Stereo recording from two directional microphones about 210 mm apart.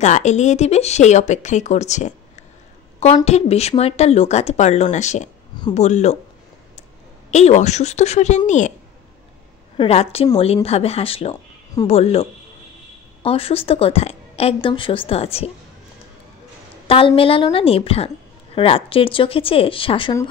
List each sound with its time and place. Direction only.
0.0 s speech: 35° left (ahead or behind)
3.3 s speech: 30° left (ahead or behind)
7.2 s speech: 35° left (ahead or behind)
9.8 s a woman's voice: 30° left (ahead or behind)
16.8 s a woman's voice: 25° left (ahead or behind)